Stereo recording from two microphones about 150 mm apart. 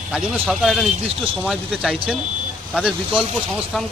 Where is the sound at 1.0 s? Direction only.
40° right (ahead or behind).